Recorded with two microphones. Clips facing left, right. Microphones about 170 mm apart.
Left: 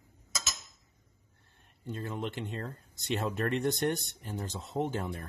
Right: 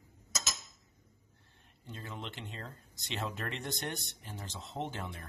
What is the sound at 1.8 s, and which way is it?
Speech, 50° left (ahead or behind).